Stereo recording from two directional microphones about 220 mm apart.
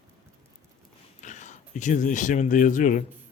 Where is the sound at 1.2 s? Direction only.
35° left (ahead or behind).